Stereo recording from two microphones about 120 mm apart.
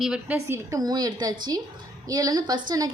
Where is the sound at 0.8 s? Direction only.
35° right (ahead or behind).